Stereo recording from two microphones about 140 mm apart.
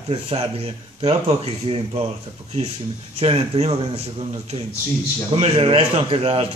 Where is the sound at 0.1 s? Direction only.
45° right (ahead or behind).